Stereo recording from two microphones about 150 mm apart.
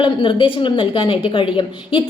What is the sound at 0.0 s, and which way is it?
A woman's voice, 35° left (ahead or behind).